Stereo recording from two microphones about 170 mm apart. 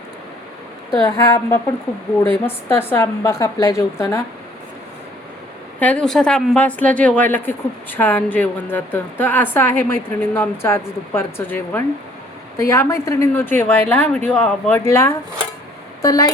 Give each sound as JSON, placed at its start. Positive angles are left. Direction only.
{"t": 1.0, "sound": "a woman's voice", "side_deg": 20}
{"t": 5.8, "sound": "a woman's voice", "side_deg": 5}